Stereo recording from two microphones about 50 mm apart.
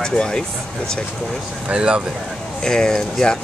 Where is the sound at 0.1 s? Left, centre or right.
Centre.